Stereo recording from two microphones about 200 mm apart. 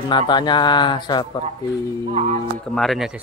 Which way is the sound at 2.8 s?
Centre (ahead or behind).